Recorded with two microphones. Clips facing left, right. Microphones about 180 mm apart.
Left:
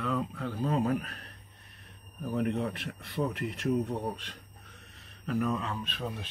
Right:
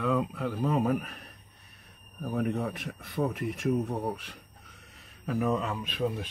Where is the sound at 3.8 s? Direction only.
10° right (ahead or behind).